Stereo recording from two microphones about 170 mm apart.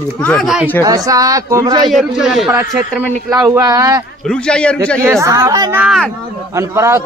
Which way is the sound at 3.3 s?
20° right (ahead or behind).